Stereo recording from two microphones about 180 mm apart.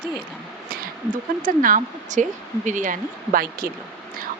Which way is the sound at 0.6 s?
50° right (ahead or behind).